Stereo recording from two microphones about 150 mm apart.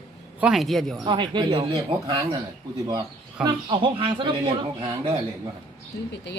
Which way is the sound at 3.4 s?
35° right (ahead or behind).